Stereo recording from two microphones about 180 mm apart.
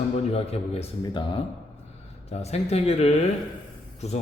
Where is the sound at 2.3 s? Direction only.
35° left (ahead or behind).